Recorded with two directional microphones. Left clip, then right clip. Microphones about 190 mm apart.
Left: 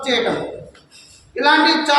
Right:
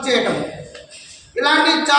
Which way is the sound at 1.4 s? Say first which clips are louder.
Left 1 dB; centre (ahead or behind).